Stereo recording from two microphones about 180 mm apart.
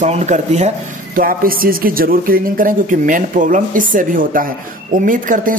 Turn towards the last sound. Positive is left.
turn(degrees=-50)  # may be behind; listen again after turning